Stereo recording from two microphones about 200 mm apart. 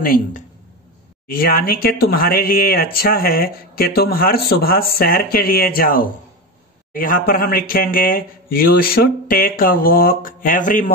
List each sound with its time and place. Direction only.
0.0 s speech: 45° left (ahead or behind)